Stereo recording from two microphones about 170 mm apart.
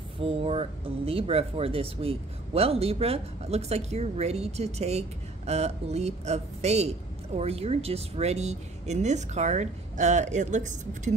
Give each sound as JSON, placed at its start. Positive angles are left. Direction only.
{"t": 0.2, "sound": "a man's voice", "side_deg": -35}